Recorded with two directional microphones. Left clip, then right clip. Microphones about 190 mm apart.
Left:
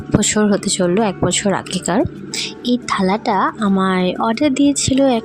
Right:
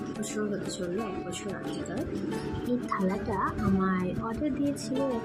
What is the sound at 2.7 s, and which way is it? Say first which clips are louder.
A woman's voice: left 13 dB; 55° left (ahead or behind).